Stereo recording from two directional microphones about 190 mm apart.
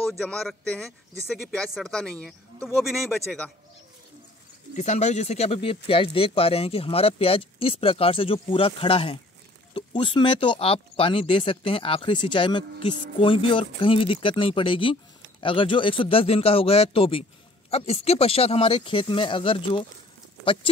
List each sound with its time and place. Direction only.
0.2 s speech: 5° left (ahead or behind)
4.7 s speech: 35° left (ahead or behind)